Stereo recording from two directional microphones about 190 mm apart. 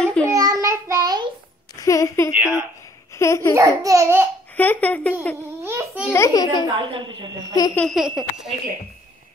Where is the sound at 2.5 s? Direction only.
15° left (ahead or behind).